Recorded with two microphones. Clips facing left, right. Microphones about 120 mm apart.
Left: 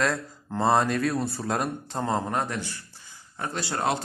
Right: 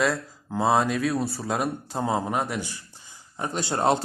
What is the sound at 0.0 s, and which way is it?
Speech, centre (ahead or behind).